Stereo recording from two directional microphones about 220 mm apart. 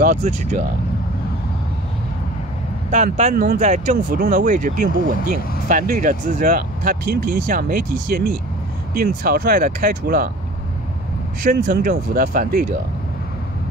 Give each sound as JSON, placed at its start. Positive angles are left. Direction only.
{"t": 0.0, "sound": "speech", "side_deg": -40}
{"t": 2.9, "sound": "speech", "side_deg": -35}
{"t": 11.4, "sound": "speech", "side_deg": -40}